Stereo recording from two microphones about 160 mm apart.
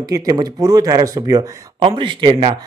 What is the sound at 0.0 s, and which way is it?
Speech, 20° right (ahead or behind).